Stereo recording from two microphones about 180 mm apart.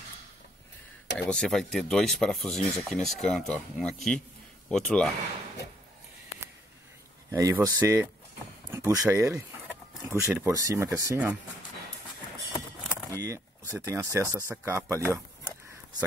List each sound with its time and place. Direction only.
1.1 s speech: 5° left (ahead or behind)
7.2 s speech: 15° right (ahead or behind)
12.8 s speech: 15° right (ahead or behind)